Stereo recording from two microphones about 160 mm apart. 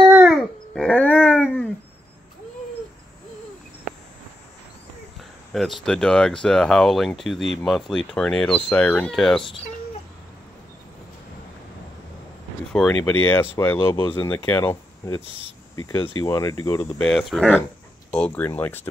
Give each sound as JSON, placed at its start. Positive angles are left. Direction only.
{"t": 0.1, "sound": "dog", "side_deg": -5}
{"t": 0.7, "sound": "dog", "side_deg": 10}
{"t": 5.5, "sound": "speech", "side_deg": 0}
{"t": 13.0, "sound": "speech", "side_deg": 10}
{"t": 17.0, "sound": "speech", "side_deg": 0}